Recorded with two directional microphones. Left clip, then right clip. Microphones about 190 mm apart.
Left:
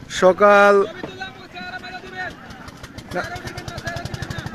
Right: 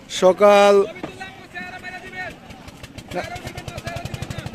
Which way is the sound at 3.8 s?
90° right.